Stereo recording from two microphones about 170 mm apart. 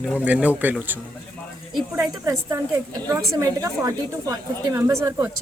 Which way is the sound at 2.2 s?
20° right (ahead or behind).